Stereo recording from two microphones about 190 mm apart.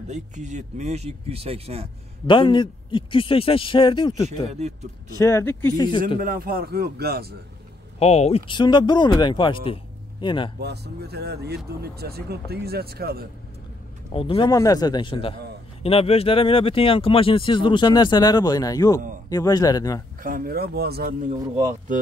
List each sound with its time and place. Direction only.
0.1 s speech: 40° right (ahead or behind)
2.2 s speech: 25° left (ahead or behind)
5.2 s speech: 15° left (ahead or behind)
5.8 s speech: 25° left (ahead or behind)
6.2 s speech: 50° right (ahead or behind)
8.0 s speech: 35° left (ahead or behind)
10.6 s speech: 60° right (ahead or behind)
14.1 s speech: 30° left (ahead or behind)
20.2 s speech: 50° right (ahead or behind)